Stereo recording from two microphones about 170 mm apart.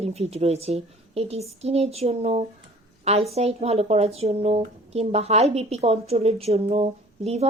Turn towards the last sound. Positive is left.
turn(degrees=-40)  # may be behind; listen again after turning